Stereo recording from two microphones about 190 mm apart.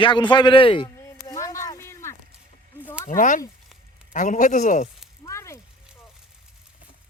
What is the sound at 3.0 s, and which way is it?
A man's voice, 45° left (ahead or behind).